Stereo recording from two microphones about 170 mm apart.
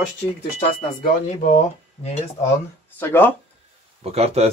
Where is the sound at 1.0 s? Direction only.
50° left (ahead or behind).